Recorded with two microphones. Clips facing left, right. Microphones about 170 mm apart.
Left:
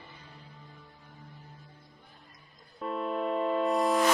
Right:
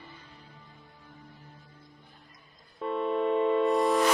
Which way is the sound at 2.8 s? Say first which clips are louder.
Right 4 dB; centre (ahead or behind).